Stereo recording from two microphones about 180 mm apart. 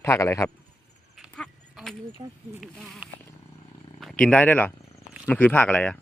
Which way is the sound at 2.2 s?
25° right (ahead or behind).